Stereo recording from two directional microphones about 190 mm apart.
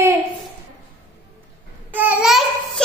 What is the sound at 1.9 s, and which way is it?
Babbling, 5° right (ahead or behind).